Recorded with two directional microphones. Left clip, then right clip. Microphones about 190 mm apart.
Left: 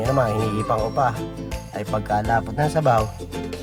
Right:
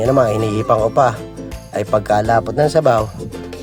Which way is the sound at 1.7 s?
40° right (ahead or behind).